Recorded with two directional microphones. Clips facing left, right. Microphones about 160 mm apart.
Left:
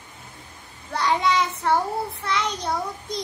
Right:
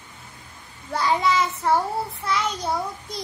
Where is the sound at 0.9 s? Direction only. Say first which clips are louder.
Even; 5° right (ahead or behind).